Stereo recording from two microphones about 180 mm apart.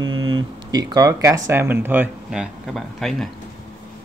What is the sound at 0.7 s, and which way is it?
Speech, 20° right (ahead or behind).